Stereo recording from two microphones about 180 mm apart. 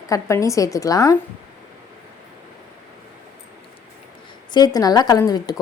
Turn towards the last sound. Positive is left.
turn(degrees=20)  # may be behind; listen again after turning